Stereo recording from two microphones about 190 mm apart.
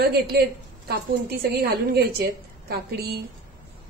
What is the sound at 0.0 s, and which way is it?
Speech, 55° right (ahead or behind).